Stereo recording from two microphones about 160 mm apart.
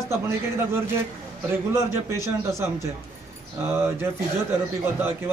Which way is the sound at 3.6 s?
15° right (ahead or behind).